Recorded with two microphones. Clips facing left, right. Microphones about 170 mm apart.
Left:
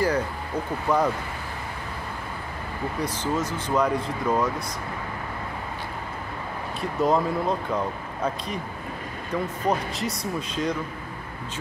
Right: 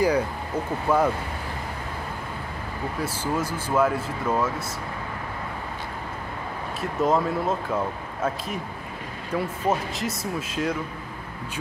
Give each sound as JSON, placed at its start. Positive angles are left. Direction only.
{"t": 0.8, "sound": "speech", "side_deg": -5}
{"t": 3.0, "sound": "speech", "side_deg": -10}
{"t": 6.8, "sound": "speech", "side_deg": 0}